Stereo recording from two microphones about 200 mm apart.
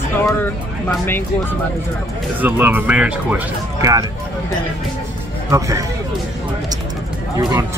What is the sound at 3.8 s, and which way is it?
Speech, 15° right (ahead or behind).